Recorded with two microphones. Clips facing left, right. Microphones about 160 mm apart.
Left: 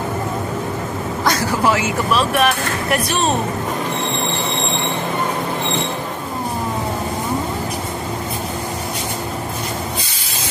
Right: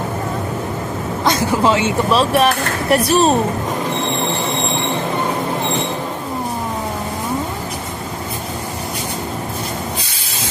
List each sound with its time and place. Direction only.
1.2 s speech: 20° right (ahead or behind)